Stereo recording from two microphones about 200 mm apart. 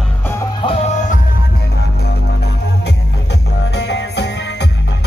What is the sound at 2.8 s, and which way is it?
Music, 55° left (ahead or behind).